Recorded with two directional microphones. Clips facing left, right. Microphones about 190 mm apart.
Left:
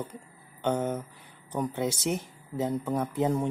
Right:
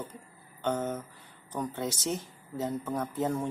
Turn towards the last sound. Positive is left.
turn(degrees=15)  # may be behind; listen again after turning